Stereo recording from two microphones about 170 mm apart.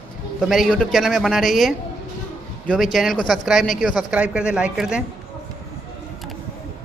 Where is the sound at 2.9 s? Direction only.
Centre (ahead or behind).